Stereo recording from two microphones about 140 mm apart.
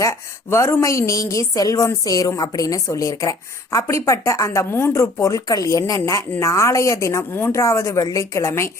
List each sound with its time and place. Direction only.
0.0 s a woman's voice: 20° left (ahead or behind)